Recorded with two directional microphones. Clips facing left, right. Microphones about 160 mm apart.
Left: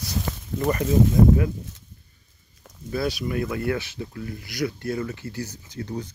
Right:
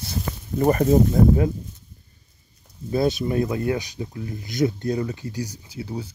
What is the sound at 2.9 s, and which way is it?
Speech, 20° right (ahead or behind).